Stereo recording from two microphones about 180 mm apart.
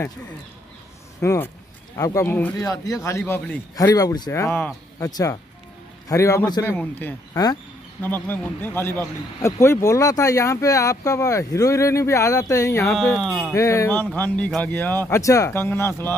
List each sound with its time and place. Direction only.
1.2 s speech: 15° left (ahead or behind)
12.9 s speech: centre (ahead or behind)
13.6 s speech: 15° left (ahead or behind)